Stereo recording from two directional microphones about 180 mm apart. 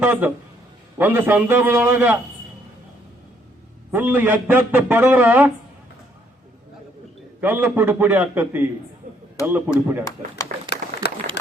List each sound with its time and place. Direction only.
0.0 s a man's voice: 10° right (ahead or behind)
3.9 s a man's voice: 10° right (ahead or behind)
7.4 s a man's voice: 10° right (ahead or behind)
9.0 s a sound: 50° right (ahead or behind)
9.5 s a man's voice: 10° right (ahead or behind)